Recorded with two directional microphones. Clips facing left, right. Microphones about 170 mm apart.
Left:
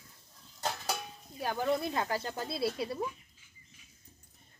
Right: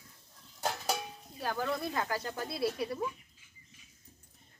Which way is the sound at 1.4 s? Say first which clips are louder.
Left 3 dB; 20° left (ahead or behind).